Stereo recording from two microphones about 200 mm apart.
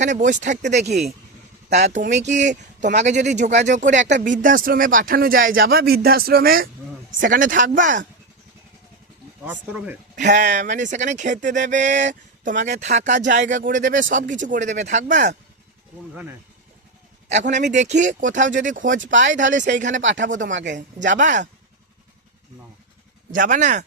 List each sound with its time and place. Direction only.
0.0 s speech: 40° right (ahead or behind)
9.5 s speech: 5° right (ahead or behind)
10.2 s speech: 35° right (ahead or behind)
17.2 s a man's voice: 35° right (ahead or behind)
20.0 s speech: 65° right (ahead or behind)
21.1 s speech: 40° right (ahead or behind)
23.3 s speech: 40° right (ahead or behind)